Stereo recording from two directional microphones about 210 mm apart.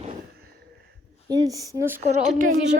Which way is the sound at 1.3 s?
20° right (ahead or behind).